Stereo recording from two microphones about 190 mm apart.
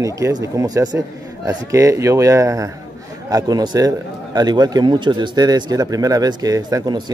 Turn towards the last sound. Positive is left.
turn(degrees=-20)  # may be behind; listen again after turning